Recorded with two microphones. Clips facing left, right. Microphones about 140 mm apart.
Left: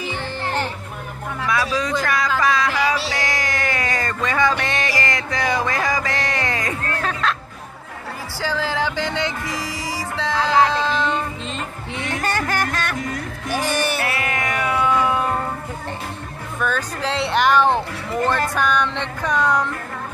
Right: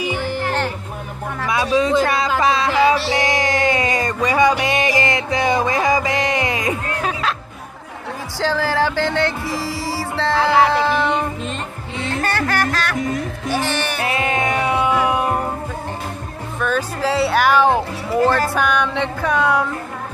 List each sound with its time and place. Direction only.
0.0 s music: 10° right (ahead or behind)
1.5 s speech: 25° right (ahead or behind)
3.1 s music: 20° right (ahead or behind)
8.4 s speech: 15° left (ahead or behind)
9.5 s music: 15° left (ahead or behind)
10.3 s music: 10° right (ahead or behind)
12.1 s music: 15° left (ahead or behind)
12.9 s music: 20° right (ahead or behind)
16.6 s speech: 5° right (ahead or behind)